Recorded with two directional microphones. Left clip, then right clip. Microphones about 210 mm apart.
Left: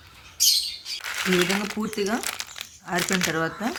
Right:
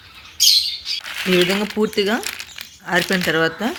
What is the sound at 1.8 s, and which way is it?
Speech, 20° right (ahead or behind).